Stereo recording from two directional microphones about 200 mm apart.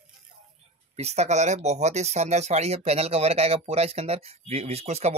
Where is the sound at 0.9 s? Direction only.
35° right (ahead or behind).